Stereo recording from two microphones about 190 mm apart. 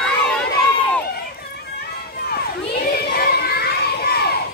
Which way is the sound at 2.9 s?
55° left (ahead or behind).